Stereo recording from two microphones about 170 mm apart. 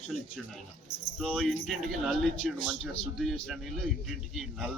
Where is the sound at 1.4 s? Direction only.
Centre (ahead or behind).